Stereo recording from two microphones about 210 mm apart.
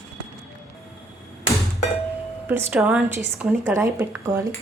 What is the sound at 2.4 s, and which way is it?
A woman's voice, 10° right (ahead or behind).